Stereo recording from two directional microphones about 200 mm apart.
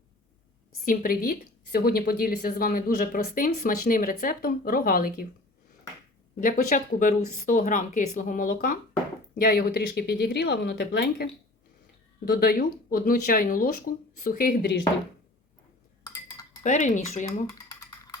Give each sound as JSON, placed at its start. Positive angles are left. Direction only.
{"t": 0.9, "sound": "a woman's voice", "side_deg": 45}
{"t": 6.4, "sound": "a woman's voice", "side_deg": 40}
{"t": 16.6, "sound": "speech", "side_deg": 35}